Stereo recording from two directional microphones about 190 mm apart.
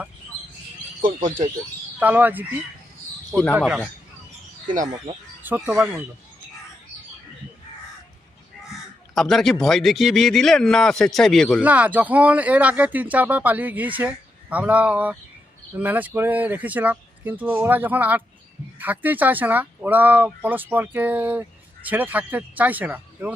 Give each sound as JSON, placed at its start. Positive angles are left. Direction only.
{"t": 0.3, "sound": "bird", "side_deg": 35}
{"t": 2.0, "sound": "speech", "side_deg": -10}
{"t": 3.5, "sound": "speech", "side_deg": -5}
{"t": 5.4, "sound": "speech", "side_deg": -10}
{"t": 9.1, "sound": "speech", "side_deg": 0}
{"t": 11.6, "sound": "speech", "side_deg": -10}